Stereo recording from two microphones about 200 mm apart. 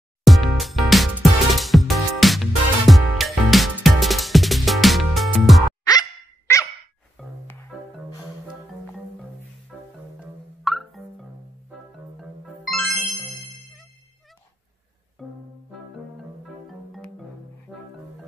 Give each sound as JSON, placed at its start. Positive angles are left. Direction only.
{"t": 0.2, "sound": "music", "side_deg": 0}
{"t": 5.9, "sound": "dog", "side_deg": 15}
{"t": 7.2, "sound": "music", "side_deg": 0}
{"t": 9.7, "sound": "marimba", "side_deg": -5}
{"t": 10.6, "sound": "music", "side_deg": 0}
{"t": 12.2, "sound": "music", "side_deg": 0}
{"t": 15.2, "sound": "music", "side_deg": 0}
{"t": 16.6, "sound": "music", "side_deg": 0}